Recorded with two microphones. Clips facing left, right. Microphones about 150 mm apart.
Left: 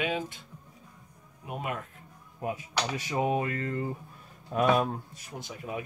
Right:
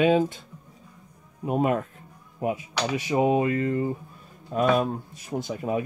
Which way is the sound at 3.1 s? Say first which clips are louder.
Right 7 dB; 20° right (ahead or behind).